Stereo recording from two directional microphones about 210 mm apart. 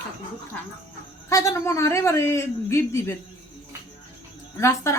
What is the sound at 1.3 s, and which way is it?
Speech, 15° left (ahead or behind).